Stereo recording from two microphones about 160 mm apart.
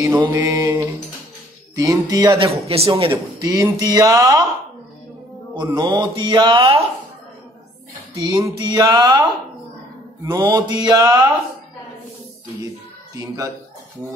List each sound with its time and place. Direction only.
0.2 s speech: 25° right (ahead or behind)
2.3 s speech: 35° right (ahead or behind)
3.1 s speech: 20° right (ahead or behind)
5.8 s speech: 30° right (ahead or behind)
8.3 s speech: 25° right (ahead or behind)
13.1 s speech: 20° right (ahead or behind)